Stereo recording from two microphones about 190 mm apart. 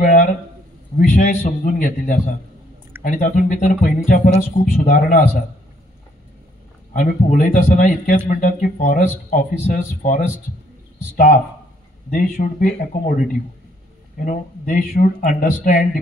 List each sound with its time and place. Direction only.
0.0 s a sound: 45° left (ahead or behind)
0.9 s speech: 40° left (ahead or behind)
6.9 s speech: 45° left (ahead or behind)